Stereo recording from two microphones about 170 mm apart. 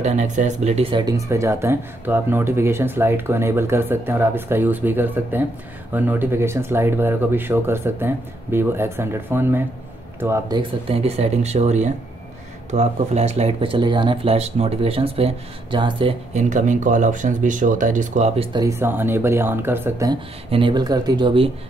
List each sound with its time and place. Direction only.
0.0 s speech: 45° right (ahead or behind); by 10.6 s 15° right (ahead or behind)
10.6 s speech: 35° right (ahead or behind)
18.5 s speech: 20° right (ahead or behind)
20.1 s speech: 30° right (ahead or behind)